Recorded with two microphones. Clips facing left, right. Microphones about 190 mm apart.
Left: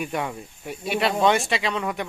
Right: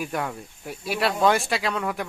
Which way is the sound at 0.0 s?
Centre (ahead or behind).